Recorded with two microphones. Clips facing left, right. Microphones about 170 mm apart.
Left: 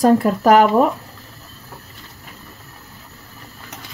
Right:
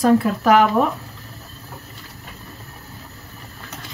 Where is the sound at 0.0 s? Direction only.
40° left (ahead or behind).